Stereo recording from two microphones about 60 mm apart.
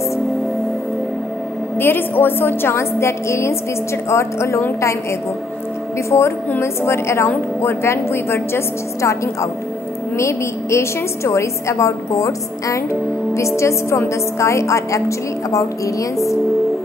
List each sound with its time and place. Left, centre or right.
1.8 s a woman's voice: left
6.0 s a woman's voice: left